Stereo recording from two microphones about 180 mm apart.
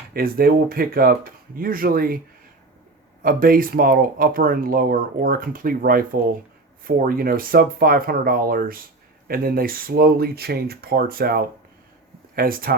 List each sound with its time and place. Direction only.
0.1 s speech: 55° right (ahead or behind)
3.2 s speech: 55° right (ahead or behind)